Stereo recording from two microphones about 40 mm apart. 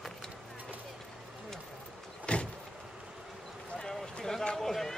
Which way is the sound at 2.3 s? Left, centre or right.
Left.